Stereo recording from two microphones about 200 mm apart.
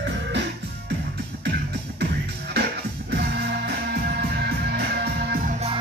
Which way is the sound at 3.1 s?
55° right (ahead or behind).